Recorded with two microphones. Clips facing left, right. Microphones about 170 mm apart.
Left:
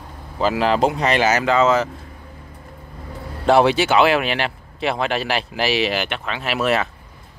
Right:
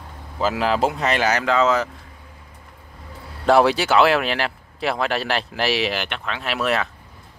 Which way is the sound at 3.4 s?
Centre (ahead or behind).